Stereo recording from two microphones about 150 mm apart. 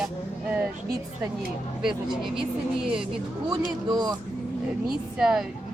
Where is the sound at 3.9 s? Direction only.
25° right (ahead or behind).